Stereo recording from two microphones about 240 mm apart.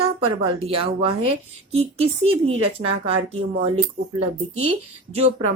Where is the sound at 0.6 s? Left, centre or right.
Right.